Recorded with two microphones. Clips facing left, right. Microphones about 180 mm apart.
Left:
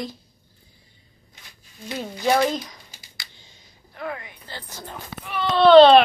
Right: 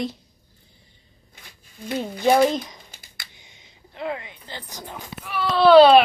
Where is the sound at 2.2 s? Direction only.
20° right (ahead or behind).